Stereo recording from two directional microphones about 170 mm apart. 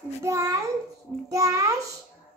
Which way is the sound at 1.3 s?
20° right (ahead or behind).